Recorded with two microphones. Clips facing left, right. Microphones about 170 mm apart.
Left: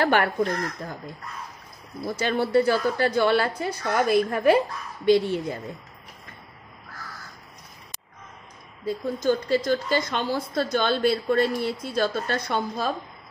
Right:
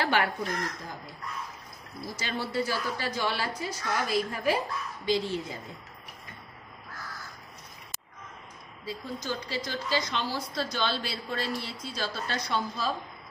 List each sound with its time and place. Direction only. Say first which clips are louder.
0.0 s a woman's voice: left 6 dB; 50° left (ahead or behind)
2.0 s a woman's voice: left 10 dB; 55° left (ahead or behind)
8.8 s a woman's voice: left 11 dB; 50° left (ahead or behind)